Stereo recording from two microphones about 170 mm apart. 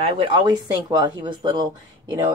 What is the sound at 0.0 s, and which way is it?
A woman's voice, 30° right (ahead or behind).